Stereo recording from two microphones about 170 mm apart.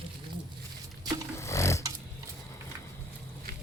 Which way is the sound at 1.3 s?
15° left (ahead or behind).